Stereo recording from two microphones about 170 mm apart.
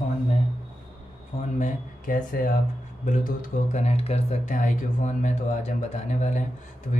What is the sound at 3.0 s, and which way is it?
Speech, 45° left (ahead or behind).